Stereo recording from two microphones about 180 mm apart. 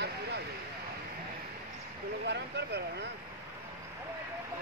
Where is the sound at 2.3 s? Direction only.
70° right (ahead or behind).